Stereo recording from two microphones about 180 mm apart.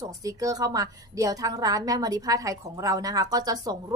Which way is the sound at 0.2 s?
20° right (ahead or behind).